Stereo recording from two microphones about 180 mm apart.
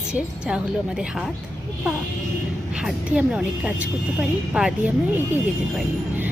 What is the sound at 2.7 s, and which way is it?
A woman's voice, 5° right (ahead or behind).